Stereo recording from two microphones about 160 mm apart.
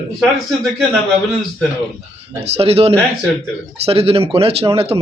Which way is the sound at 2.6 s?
40° right (ahead or behind).